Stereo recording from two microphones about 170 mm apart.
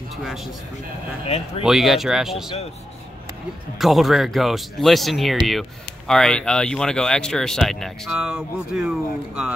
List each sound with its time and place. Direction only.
0.1 s a man's voice: centre (ahead or behind)
1.2 s speech: 40° left (ahead or behind)
1.6 s speech: centre (ahead or behind)
3.7 s speech: centre (ahead or behind)